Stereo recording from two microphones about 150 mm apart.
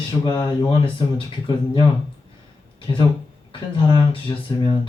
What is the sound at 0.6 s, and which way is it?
Speech, 35° left (ahead or behind).